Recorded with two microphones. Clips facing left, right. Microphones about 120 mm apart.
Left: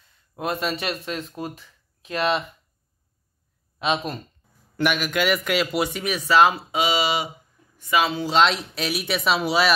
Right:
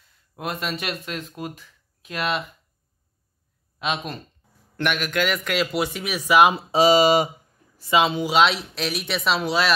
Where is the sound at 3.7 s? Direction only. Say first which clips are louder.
Left 3 dB; centre (ahead or behind).